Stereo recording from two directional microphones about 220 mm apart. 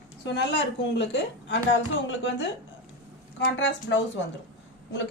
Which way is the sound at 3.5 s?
55° left (ahead or behind).